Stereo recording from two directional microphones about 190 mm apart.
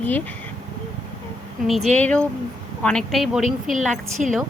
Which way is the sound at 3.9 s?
40° right (ahead or behind).